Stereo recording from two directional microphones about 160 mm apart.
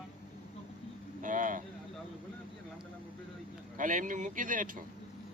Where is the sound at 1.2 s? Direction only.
55° right (ahead or behind).